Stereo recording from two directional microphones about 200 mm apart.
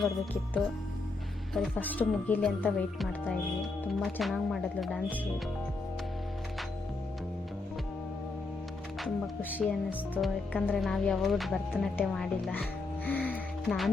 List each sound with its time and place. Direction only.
1.5 s a woman's voice: 5° left (ahead or behind)
9.0 s speech: centre (ahead or behind)
13.1 s music: 10° left (ahead or behind)